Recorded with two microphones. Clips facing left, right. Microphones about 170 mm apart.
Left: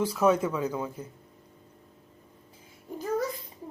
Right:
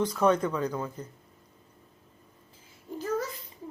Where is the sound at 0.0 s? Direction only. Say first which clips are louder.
Left 1 dB; 5° left (ahead or behind).